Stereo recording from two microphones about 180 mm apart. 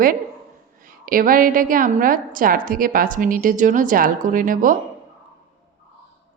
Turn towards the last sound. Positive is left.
turn(degrees=-50)  # may be behind; listen again after turning